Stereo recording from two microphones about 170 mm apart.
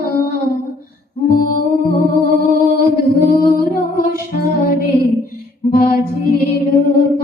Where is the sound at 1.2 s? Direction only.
55° left (ahead or behind).